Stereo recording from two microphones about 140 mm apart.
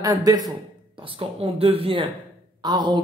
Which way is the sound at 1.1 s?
45° right (ahead or behind).